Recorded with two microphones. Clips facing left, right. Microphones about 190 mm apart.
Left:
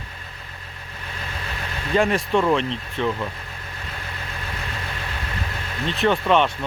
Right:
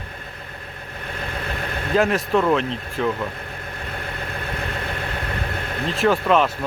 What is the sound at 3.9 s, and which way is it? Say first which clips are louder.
Vehicle: right 5 dB; 55° right (ahead or behind).